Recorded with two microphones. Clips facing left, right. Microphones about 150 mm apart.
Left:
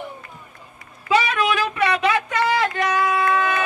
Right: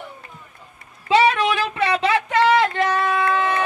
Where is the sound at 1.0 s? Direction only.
30° right (ahead or behind).